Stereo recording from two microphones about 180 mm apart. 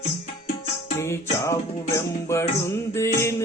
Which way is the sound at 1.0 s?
15° left (ahead or behind).